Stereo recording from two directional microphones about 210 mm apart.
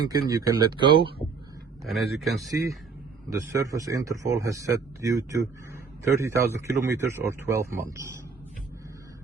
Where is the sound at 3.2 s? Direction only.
15° right (ahead or behind).